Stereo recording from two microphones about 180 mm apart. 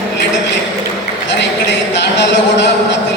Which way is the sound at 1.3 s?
75° left (ahead or behind).